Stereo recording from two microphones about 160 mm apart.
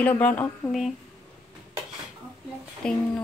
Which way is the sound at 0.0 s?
10° left (ahead or behind).